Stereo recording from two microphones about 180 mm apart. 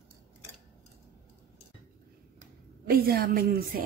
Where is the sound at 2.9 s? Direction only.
55° right (ahead or behind).